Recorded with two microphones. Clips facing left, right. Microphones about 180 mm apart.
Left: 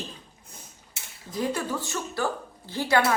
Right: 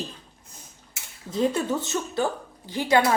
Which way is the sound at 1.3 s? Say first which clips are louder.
Right 5 dB; 25° right (ahead or behind).